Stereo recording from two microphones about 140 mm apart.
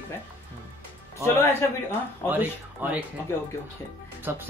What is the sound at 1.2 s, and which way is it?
Speech, 20° left (ahead or behind).